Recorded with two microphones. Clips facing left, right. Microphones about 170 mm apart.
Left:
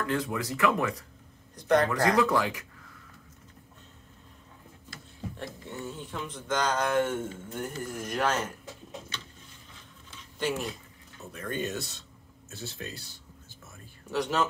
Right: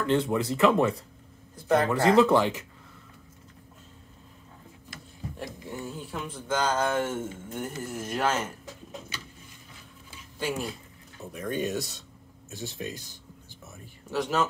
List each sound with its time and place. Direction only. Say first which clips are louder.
0.0 s speech: right 5 dB; 25° right (ahead or behind)
1.5 s speech: even; 5° right (ahead or behind)
2.0 s speech: right 5 dB; 25° right (ahead or behind)
5.4 s speech: right 3 dB; 10° right (ahead or behind)
9.1 s vehicle: right 1 dB; 10° right (ahead or behind)
10.1 s a sound: left 1 dB; 10° right (ahead or behind)
11.3 s speech: right 3 dB; 15° right (ahead or behind)
14.1 s speech: right 1 dB; 5° right (ahead or behind)